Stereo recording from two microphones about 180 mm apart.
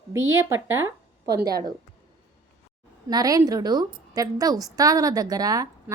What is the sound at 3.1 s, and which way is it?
A woman's voice, 20° right (ahead or behind).